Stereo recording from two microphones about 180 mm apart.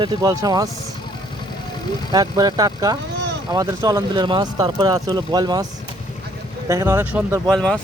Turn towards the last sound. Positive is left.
turn(degrees=-15)  # may be behind; listen again after turning